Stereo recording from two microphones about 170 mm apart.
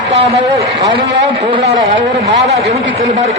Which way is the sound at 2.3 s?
85° right.